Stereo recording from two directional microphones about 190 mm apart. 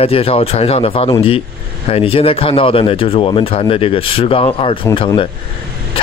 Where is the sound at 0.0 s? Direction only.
30° left (ahead or behind).